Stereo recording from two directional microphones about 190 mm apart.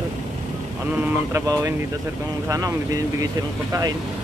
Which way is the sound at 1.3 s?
15° right (ahead or behind).